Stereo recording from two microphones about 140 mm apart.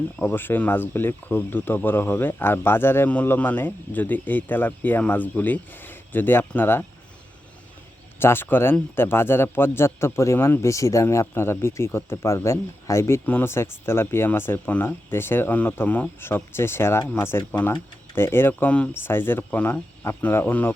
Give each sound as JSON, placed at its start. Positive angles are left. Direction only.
{"t": 0.2, "sound": "a man's voice", "side_deg": 15}
{"t": 8.2, "sound": "a man's voice", "side_deg": 15}